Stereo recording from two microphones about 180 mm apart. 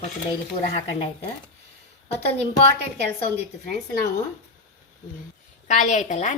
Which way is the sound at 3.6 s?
45° left (ahead or behind).